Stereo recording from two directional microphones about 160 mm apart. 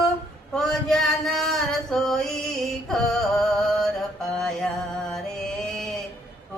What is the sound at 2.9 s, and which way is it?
Music, centre (ahead or behind).